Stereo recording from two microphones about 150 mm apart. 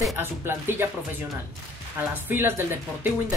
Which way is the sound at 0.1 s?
15° right (ahead or behind).